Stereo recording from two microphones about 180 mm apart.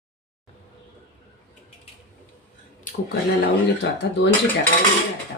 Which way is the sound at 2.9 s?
45° left (ahead or behind).